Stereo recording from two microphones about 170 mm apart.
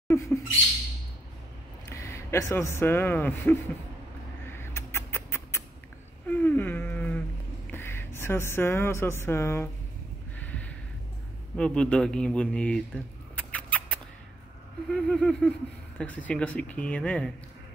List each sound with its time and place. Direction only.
0.1 s speech: 15° left (ahead or behind)
1.9 s speech: 15° left (ahead or behind)
4.5 s rodents: 15° left (ahead or behind)
6.2 s a sound: 10° left (ahead or behind)
7.7 s speech: 15° left (ahead or behind)
10.4 s a sound: 10° left (ahead or behind)
11.5 s speech: 5° left (ahead or behind)
14.9 s a sound: centre (ahead or behind)
16.0 s speech: 10° left (ahead or behind)